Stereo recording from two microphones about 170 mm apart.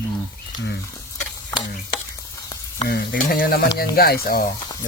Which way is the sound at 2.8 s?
70° left (ahead or behind).